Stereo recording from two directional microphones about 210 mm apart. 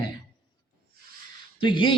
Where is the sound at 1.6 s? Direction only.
20° left (ahead or behind).